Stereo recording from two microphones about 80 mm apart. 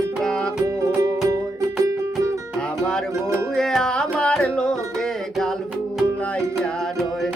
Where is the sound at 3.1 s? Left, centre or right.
Right.